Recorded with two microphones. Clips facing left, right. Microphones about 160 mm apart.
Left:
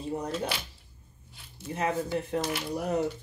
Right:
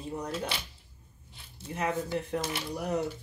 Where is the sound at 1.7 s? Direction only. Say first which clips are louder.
Left 2 dB; 25° left (ahead or behind).